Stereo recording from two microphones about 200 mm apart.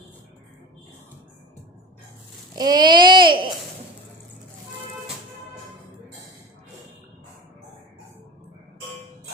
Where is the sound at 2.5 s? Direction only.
20° right (ahead or behind).